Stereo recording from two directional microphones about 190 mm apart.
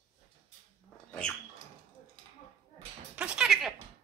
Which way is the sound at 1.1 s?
5° left (ahead or behind).